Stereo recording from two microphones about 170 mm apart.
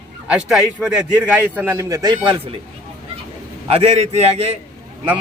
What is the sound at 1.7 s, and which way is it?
Speech, 20° right (ahead or behind).